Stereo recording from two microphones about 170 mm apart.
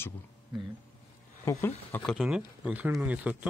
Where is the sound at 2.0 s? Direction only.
Centre (ahead or behind).